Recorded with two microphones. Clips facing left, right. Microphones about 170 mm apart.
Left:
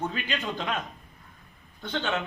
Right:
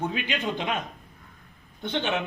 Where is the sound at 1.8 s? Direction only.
20° right (ahead or behind).